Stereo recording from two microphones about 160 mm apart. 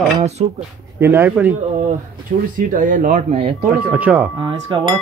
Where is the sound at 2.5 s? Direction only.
55° right (ahead or behind).